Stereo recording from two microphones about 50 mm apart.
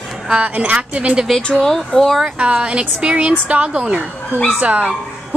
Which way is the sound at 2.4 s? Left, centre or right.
Right.